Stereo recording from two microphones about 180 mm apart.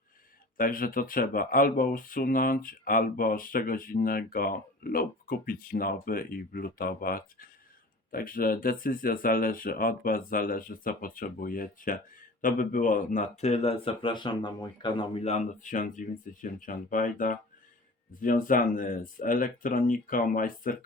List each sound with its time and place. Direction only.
0.5 s speech: 50° left (ahead or behind)